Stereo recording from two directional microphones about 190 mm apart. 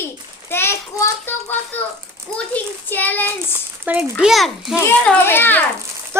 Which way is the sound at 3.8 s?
10° right (ahead or behind).